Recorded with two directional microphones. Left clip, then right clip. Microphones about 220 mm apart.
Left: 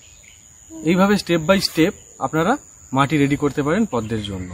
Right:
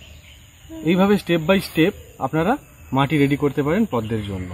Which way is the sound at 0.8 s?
15° left (ahead or behind).